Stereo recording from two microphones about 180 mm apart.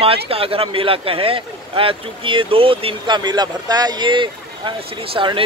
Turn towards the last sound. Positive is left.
turn(degrees=-30)  # may be behind; listen again after turning